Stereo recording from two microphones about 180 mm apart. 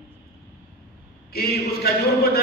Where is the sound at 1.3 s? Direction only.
60° left (ahead or behind).